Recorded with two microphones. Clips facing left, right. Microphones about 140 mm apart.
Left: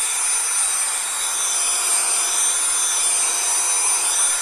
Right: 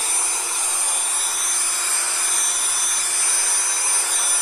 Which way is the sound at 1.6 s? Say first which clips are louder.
Left 1 dB; 15° left (ahead or behind).